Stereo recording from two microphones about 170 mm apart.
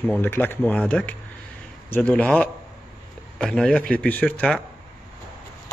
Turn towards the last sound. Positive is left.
turn(degrees=10)  # may be behind; listen again after turning